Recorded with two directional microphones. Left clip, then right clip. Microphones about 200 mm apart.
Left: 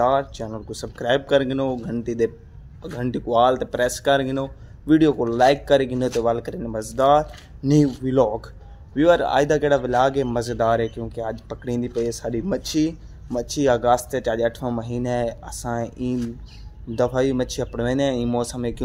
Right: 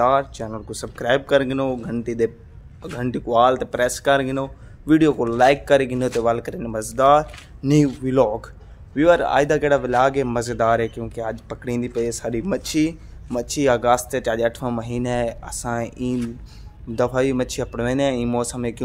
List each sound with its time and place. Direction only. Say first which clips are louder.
0.0 s speech: right 2 dB; centre (ahead or behind)